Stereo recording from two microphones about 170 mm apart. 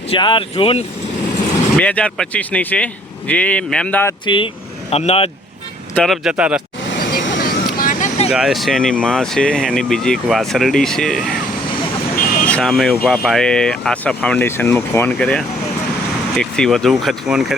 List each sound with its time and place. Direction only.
0.1 s speech: 30° left (ahead or behind)
1.8 s speech: 5° left (ahead or behind)
4.3 s speech: 30° left (ahead or behind)
5.9 s speech: 5° left (ahead or behind)
6.9 s vehicle: 75° left (ahead or behind)
7.8 s vehicle: 50° left (ahead or behind)
8.3 s speech: 5° right (ahead or behind)
12.5 s speech: 5° left (ahead or behind)